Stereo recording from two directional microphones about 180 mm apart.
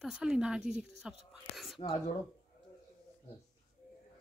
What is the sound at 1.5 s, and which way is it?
Whispering, centre (ahead or behind).